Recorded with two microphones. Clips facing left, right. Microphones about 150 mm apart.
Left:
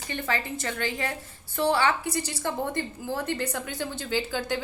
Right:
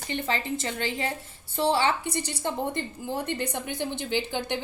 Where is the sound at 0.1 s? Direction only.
25° right (ahead or behind).